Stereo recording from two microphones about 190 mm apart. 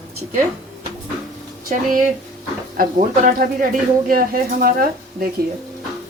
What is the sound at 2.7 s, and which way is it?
Speech, 50° right (ahead or behind).